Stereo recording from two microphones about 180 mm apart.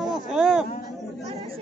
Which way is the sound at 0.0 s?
Centre (ahead or behind).